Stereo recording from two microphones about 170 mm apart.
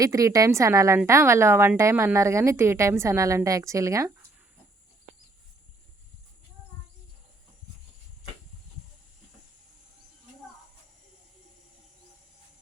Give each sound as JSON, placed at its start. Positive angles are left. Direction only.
{"t": 0.0, "sound": "a woman's voice", "side_deg": -20}